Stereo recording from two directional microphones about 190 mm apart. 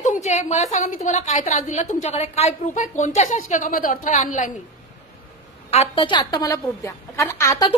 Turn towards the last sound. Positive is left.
turn(degrees=15)  # may be behind; listen again after turning